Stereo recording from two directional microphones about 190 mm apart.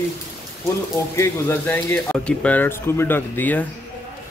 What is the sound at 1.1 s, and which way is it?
Speech, 15° left (ahead or behind).